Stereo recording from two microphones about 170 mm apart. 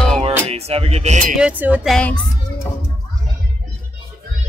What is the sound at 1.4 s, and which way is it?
Speech, 10° right (ahead or behind).